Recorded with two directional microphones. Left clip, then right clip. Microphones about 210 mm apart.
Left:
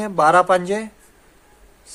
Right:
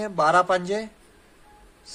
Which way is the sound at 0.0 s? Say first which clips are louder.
Left 5 dB; 25° left (ahead or behind).